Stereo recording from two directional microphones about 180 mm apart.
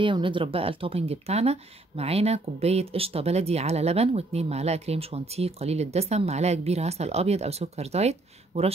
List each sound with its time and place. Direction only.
0.0 s speech: 25° right (ahead or behind)